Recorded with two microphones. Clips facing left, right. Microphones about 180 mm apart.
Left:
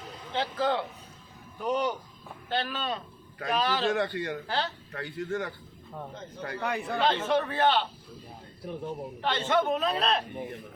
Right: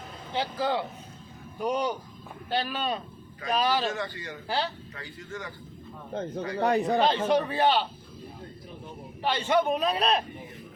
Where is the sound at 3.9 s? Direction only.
60° left (ahead or behind).